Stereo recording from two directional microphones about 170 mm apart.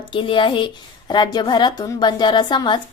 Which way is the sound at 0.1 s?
30° left (ahead or behind).